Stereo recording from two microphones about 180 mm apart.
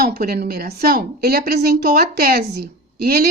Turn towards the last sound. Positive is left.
turn(degrees=-60)  # may be behind; listen again after turning